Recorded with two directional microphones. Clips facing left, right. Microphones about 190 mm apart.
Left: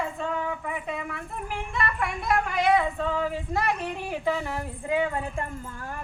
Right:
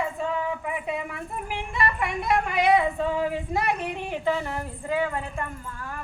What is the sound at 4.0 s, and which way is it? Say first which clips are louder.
Speech: right 1 dB; 5° left (ahead or behind).